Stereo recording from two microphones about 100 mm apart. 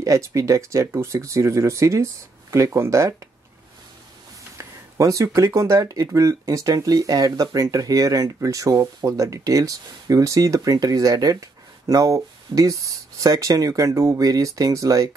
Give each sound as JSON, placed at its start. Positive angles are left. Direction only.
{"t": 0.0, "sound": "speech", "side_deg": -30}
{"t": 4.6, "sound": "speech", "side_deg": -35}